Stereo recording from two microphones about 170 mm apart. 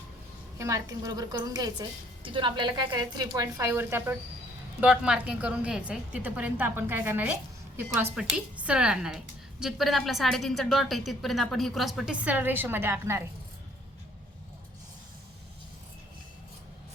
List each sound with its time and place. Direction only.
0.6 s a woman's voice: 20° right (ahead or behind)